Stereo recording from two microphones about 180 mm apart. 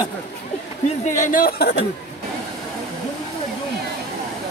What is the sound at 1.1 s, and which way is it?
Speech, 50° left (ahead or behind).